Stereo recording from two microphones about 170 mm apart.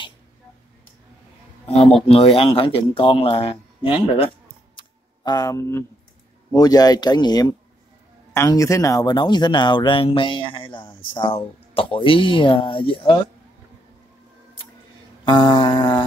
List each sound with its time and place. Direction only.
2.0 s speech: 35° left (ahead or behind)
4.7 s a sound: 25° left (ahead or behind)
6.5 s speech: 20° left (ahead or behind)
15.2 s speech: 25° left (ahead or behind)